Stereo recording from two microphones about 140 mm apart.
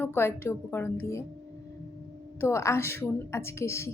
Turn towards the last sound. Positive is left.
turn(degrees=20)  # may be behind; listen again after turning